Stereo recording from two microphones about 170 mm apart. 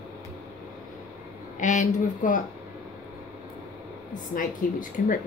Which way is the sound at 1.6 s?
45° left (ahead or behind).